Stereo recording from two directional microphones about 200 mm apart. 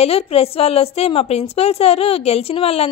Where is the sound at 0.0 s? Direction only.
30° left (ahead or behind).